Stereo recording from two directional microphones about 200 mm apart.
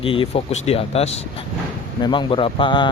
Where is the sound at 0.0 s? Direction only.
25° left (ahead or behind).